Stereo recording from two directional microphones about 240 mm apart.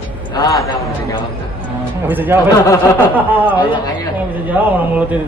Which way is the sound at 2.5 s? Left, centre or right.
Centre.